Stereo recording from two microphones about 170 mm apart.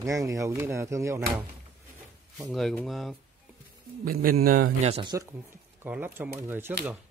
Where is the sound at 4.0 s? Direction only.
60° right (ahead or behind).